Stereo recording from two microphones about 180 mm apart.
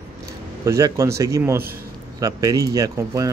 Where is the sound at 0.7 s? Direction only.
20° right (ahead or behind).